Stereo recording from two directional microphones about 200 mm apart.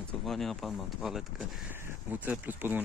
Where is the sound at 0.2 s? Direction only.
Centre (ahead or behind).